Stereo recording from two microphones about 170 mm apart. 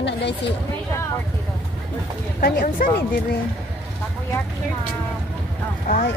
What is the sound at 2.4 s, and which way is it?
Speech, 60° left (ahead or behind).